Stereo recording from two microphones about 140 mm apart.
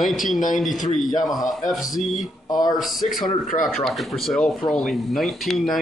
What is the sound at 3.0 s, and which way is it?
Speech, 55° left (ahead or behind).